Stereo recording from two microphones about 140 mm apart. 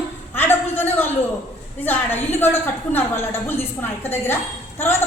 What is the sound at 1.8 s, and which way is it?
Speech, 15° left (ahead or behind).